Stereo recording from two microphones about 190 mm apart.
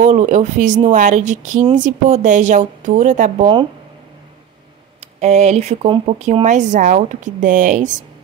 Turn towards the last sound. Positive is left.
turn(degrees=-40)  # may be behind; listen again after turning